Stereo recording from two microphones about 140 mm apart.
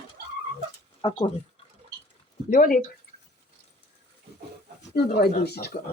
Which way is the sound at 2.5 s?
80° left.